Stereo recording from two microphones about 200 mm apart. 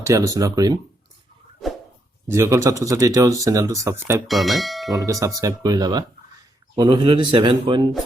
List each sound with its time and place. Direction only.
0.0 s speech: 15° right (ahead or behind)
2.2 s speech: 15° right (ahead or behind)
4.3 s speech: centre (ahead or behind)
4.9 s a man's voice: 15° right (ahead or behind)